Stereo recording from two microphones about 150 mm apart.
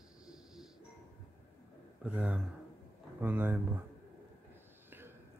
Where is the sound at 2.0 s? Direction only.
10° right (ahead or behind).